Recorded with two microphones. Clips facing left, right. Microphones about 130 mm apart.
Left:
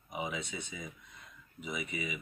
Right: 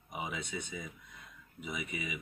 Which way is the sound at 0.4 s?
55° right (ahead or behind).